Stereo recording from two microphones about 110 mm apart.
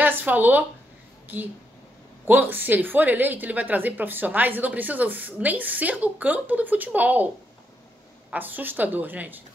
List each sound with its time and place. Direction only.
0.0 s a woman's voice: 15° right (ahead or behind)
8.3 s a woman's voice: 15° right (ahead or behind)